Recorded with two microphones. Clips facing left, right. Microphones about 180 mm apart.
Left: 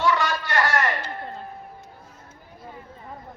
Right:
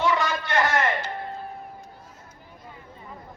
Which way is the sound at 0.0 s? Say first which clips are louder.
Left 1 dB; 20° right (ahead or behind).